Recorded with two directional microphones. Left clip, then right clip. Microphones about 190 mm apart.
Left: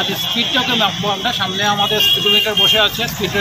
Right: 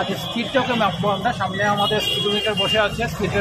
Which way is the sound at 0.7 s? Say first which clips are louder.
Left 3 dB; centre (ahead or behind).